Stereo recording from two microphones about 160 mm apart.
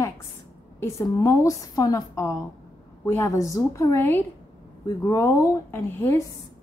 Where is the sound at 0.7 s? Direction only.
20° left (ahead or behind).